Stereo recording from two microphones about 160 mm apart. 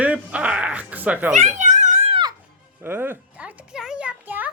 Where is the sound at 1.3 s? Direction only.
50° right (ahead or behind).